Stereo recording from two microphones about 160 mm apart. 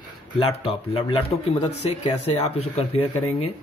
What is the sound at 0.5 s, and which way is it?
Speech, 35° left (ahead or behind).